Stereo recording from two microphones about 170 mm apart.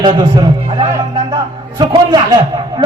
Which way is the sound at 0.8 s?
25° right (ahead or behind).